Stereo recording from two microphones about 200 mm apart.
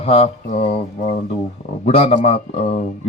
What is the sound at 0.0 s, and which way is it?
Mantra, 30° left (ahead or behind).